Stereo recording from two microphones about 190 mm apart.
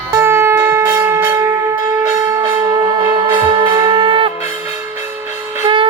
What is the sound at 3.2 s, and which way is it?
Music, 20° right (ahead or behind).